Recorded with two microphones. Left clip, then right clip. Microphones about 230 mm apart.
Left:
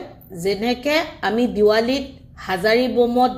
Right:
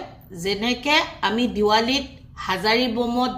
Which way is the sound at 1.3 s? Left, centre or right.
Centre.